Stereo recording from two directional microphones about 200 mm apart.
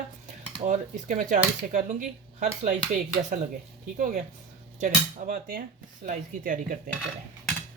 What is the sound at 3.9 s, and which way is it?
Speech, 40° right (ahead or behind).